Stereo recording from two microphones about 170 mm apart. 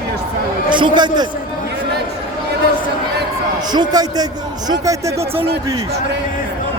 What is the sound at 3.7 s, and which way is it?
Speech, 25° right (ahead or behind).